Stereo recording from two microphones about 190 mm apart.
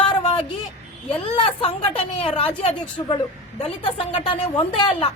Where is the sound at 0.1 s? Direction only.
25° left (ahead or behind).